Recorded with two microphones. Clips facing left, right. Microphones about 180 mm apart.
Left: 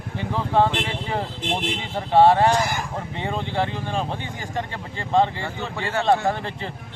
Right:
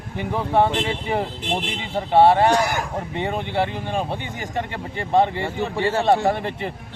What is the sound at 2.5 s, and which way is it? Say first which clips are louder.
Speech: right 3 dB; 60° right (ahead or behind).